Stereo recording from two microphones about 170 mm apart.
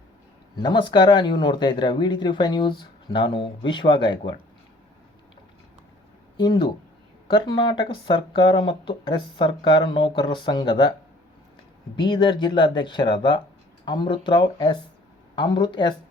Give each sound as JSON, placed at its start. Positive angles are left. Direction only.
{"t": 0.5, "sound": "speech", "side_deg": 25}
{"t": 6.3, "sound": "speech", "side_deg": 25}
{"t": 11.9, "sound": "speech", "side_deg": 25}